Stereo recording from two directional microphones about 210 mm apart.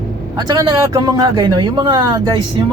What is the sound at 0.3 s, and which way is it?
Speech, 20° right (ahead or behind).